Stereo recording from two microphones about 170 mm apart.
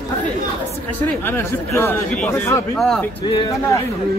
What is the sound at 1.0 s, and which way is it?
Speech, 15° left (ahead or behind).